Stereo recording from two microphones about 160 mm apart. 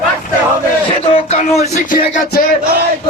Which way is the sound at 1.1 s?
40° left (ahead or behind).